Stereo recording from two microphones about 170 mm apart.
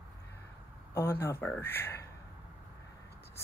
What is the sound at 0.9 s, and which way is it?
Speech, 15° left (ahead or behind).